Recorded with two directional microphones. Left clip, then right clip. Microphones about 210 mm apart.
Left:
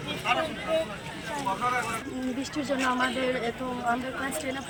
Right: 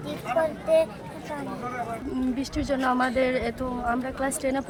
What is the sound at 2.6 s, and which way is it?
Speech, 20° right (ahead or behind).